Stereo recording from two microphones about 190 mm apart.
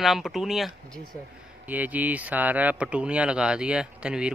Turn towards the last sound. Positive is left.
turn(degrees=-5)  # may be behind; listen again after turning